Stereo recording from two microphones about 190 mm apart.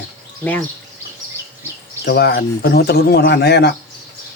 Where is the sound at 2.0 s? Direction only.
60° left (ahead or behind).